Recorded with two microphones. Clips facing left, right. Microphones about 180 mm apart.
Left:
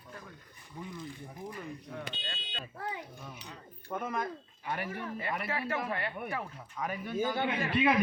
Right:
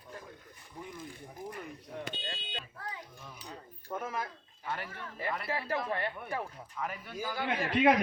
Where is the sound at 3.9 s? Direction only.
5° right (ahead or behind).